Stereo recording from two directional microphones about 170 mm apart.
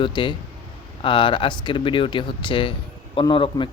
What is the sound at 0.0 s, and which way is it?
Speech, 30° left (ahead or behind).